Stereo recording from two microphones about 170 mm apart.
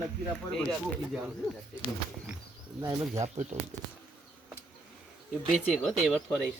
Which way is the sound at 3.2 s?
40° right (ahead or behind).